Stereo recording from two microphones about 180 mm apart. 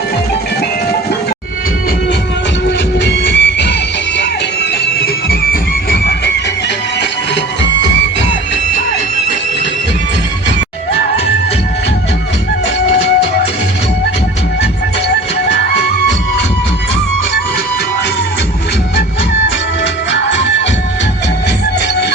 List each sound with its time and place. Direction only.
2.6 s train: 75° left (ahead or behind)
4.9 s music: 60° left (ahead or behind)
19.8 s music: 75° left (ahead or behind)